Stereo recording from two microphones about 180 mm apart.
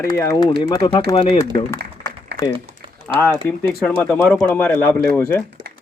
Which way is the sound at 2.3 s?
65° right (ahead or behind).